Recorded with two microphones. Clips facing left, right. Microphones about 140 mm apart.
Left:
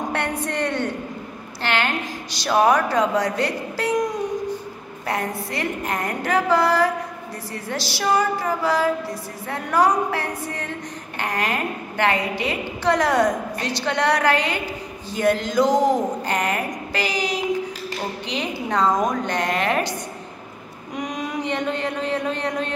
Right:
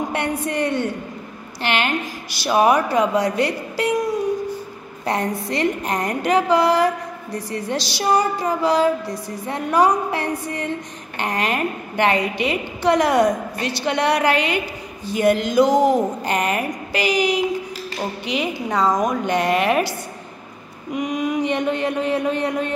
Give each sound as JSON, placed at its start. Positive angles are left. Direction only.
{"t": 0.1, "sound": "a sound", "side_deg": -15}
{"t": 1.6, "sound": "a woman's voice", "side_deg": -15}
{"t": 5.0, "sound": "a woman's voice", "side_deg": -20}
{"t": 7.3, "sound": "female singing", "side_deg": -20}
{"t": 9.5, "sound": "a woman's voice", "side_deg": -20}
{"t": 20.9, "sound": "child singing", "side_deg": -5}
{"t": 21.4, "sound": "a woman's voice", "side_deg": -15}